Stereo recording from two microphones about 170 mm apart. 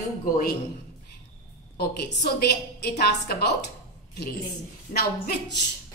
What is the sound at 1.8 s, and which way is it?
A woman's voice, 70° left (ahead or behind).